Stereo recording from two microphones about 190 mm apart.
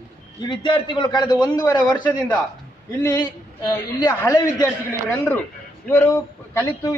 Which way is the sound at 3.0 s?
20° left (ahead or behind).